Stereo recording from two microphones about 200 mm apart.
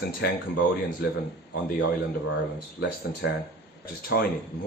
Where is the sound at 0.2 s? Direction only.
50° left (ahead or behind).